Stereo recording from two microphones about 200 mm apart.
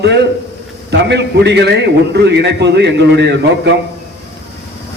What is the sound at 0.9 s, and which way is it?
A man's voice, 60° right (ahead or behind).